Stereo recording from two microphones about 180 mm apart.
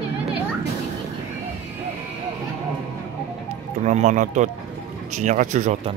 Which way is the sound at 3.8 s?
40° right (ahead or behind).